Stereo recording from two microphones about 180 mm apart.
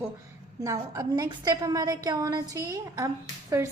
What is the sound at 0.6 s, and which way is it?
A woman's voice, 20° right (ahead or behind).